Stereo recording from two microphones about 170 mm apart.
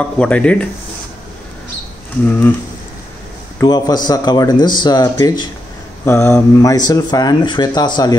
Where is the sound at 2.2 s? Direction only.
10° left (ahead or behind).